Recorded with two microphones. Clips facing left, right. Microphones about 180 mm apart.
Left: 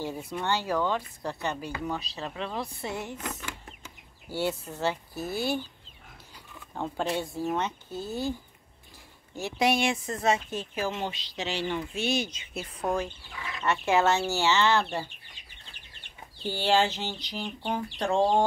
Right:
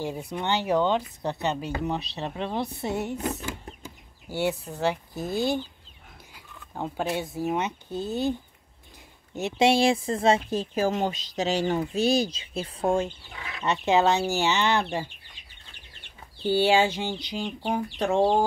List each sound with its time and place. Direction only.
0.0 s speech: 15° right (ahead or behind)
3.3 s a sound: 25° right (ahead or behind)
4.3 s speech: 10° right (ahead or behind)
6.3 s speech: 10° right (ahead or behind)
16.6 s speech: 10° right (ahead or behind)